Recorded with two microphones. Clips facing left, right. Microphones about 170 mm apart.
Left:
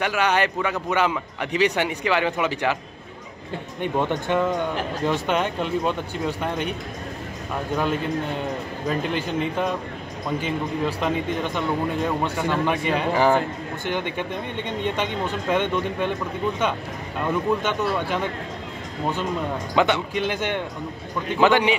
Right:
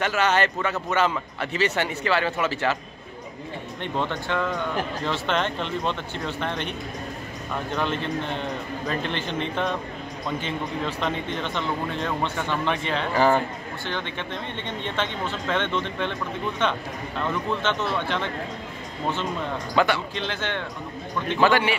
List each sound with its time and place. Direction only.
0.0 s a man's voice: 10° left (ahead or behind)
3.8 s a man's voice: 15° left (ahead or behind)
7.7 s a man's voice: 10° left (ahead or behind)
19.7 s a man's voice: 15° left (ahead or behind)